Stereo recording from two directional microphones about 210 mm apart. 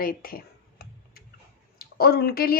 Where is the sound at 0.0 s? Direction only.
45° left (ahead or behind).